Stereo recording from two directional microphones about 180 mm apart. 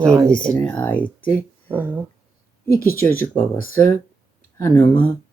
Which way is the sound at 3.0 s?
10° left (ahead or behind).